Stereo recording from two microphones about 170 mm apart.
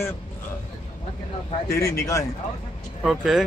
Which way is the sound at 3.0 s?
Centre (ahead or behind).